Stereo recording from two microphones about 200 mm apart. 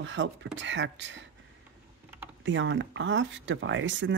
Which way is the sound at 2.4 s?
65° right (ahead or behind).